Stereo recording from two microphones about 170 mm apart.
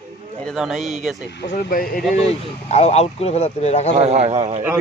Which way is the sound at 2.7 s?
40° left (ahead or behind).